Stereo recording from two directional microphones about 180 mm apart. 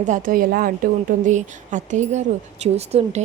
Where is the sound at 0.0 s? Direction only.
45° right (ahead or behind).